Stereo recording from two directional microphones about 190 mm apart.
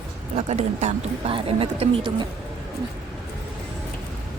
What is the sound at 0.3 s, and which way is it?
Speech, 35° right (ahead or behind).